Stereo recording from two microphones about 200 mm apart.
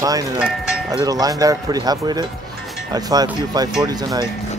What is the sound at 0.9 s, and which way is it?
Speech, 20° right (ahead or behind).